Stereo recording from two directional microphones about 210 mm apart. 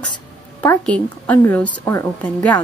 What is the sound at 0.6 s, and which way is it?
A woman's voice, 5° left (ahead or behind).